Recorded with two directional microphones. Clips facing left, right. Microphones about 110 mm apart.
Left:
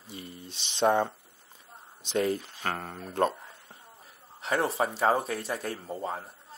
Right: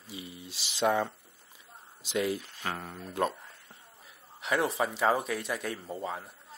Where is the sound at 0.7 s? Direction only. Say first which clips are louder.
Left 3 dB; 30° left (ahead or behind).